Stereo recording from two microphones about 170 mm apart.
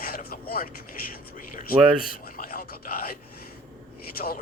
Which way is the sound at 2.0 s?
60° left (ahead or behind).